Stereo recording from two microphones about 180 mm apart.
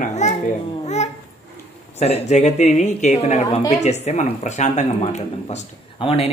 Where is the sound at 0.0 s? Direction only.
40° left (ahead or behind).